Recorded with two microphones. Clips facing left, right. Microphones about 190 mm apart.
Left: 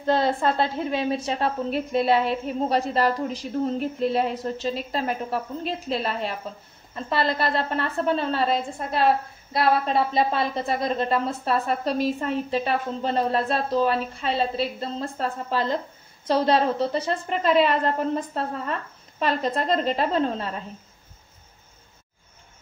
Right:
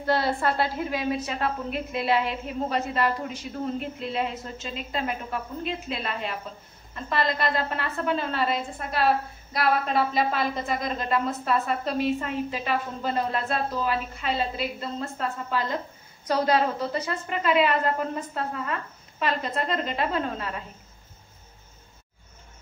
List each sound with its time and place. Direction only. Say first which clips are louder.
0.0 s a woman's voice: left 3 dB; 20° left (ahead or behind)